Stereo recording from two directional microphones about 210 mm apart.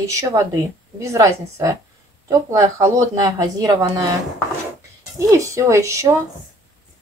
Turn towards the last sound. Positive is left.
turn(degrees=-15)  # may be behind; listen again after turning